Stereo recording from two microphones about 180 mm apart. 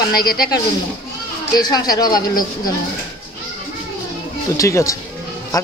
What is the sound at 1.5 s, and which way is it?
Speech, 20° left (ahead or behind).